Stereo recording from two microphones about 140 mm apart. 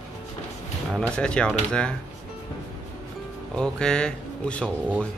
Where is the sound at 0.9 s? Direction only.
5° left (ahead or behind).